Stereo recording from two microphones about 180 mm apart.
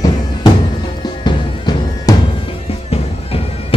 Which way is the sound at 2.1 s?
20° left (ahead or behind).